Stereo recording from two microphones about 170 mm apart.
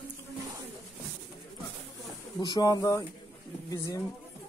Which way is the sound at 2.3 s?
20° left (ahead or behind).